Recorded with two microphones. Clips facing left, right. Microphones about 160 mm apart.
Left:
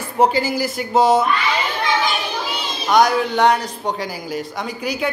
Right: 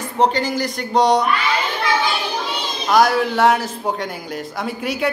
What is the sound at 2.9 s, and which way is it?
Speech, centre (ahead or behind).